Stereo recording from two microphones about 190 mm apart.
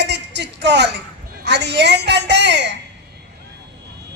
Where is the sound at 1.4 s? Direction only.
65° right (ahead or behind).